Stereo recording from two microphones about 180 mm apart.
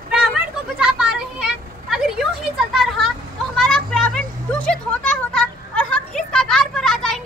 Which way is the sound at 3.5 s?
5° left (ahead or behind).